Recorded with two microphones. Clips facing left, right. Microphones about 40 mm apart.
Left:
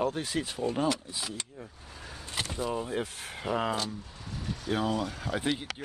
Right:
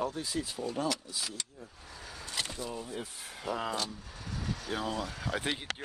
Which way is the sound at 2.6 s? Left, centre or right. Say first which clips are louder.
Left 7 dB; left.